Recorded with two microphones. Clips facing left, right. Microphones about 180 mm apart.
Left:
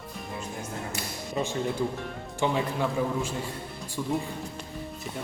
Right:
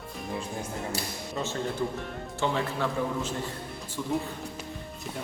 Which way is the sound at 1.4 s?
15° left (ahead or behind).